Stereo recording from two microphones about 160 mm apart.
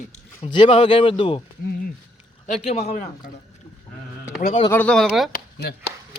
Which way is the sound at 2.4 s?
50° left (ahead or behind).